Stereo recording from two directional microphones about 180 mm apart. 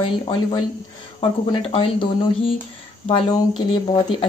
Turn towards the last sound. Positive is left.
turn(degrees=25)  # may be behind; listen again after turning